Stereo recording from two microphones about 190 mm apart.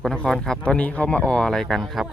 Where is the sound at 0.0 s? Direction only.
5° left (ahead or behind).